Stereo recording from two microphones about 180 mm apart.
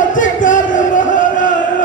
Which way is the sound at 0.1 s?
45° left (ahead or behind).